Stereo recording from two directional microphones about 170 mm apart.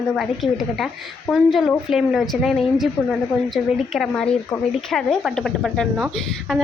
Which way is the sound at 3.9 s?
Centre (ahead or behind).